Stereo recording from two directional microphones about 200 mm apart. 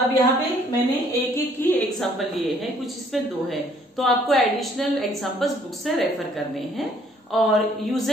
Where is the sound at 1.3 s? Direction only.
10° left (ahead or behind).